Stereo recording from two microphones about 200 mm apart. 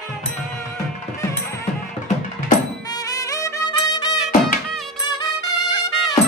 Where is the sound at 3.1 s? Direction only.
15° left (ahead or behind).